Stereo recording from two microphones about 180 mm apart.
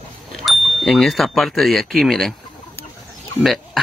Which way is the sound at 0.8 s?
Centre (ahead or behind).